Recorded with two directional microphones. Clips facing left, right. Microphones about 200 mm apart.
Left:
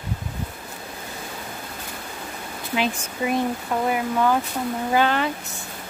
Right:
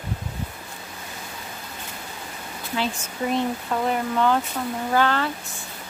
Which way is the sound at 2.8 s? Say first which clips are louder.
Left 2 dB; 10° left (ahead or behind).